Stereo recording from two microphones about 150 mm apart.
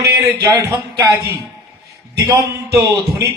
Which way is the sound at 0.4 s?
20° right (ahead or behind).